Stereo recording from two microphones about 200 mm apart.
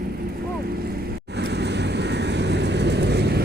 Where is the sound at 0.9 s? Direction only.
55° right (ahead or behind).